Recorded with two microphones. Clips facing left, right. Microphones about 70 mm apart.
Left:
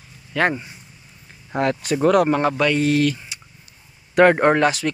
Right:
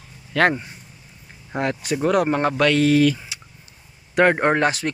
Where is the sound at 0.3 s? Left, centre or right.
Right.